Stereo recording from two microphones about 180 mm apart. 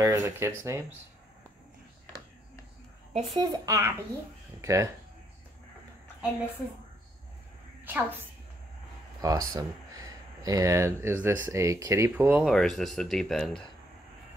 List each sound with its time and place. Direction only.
0.0 s speech: 15° right (ahead or behind)
3.3 s a child's voice: 20° right (ahead or behind)
7.8 s a woman's voice: 10° right (ahead or behind)
9.2 s a child's voice: 20° right (ahead or behind)
12.4 s speech: centre (ahead or behind)